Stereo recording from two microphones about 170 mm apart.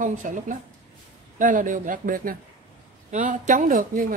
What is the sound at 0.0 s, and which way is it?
A woman's voice, 50° right (ahead or behind).